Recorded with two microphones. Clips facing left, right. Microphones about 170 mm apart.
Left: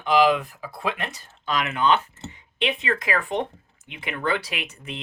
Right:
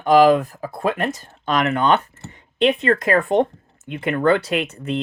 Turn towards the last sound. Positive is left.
turn(degrees=-55)  # may be behind; listen again after turning